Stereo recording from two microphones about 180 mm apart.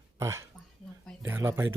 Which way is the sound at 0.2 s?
15° right (ahead or behind).